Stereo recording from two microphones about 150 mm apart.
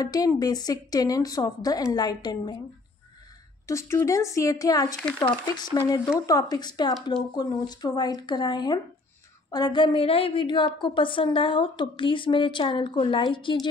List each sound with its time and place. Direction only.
0.0 s a woman's voice: 25° left (ahead or behind)
3.6 s a woman's voice: 20° left (ahead or behind)